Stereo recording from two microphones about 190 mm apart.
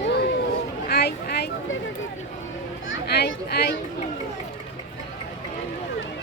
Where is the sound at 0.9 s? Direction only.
60° left (ahead or behind).